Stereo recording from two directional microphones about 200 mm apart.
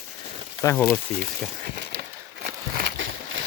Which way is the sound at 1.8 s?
55° right (ahead or behind).